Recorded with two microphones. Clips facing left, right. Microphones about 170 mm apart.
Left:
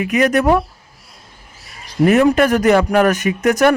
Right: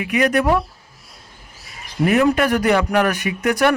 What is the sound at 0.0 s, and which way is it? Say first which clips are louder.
Speech: left 3 dB; 45° left (ahead or behind).